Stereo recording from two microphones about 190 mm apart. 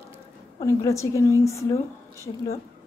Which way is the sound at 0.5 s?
15° left (ahead or behind).